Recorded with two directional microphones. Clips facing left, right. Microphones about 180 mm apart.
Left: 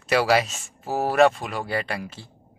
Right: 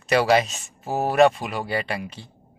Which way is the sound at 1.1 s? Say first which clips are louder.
Right 1 dB; centre (ahead or behind).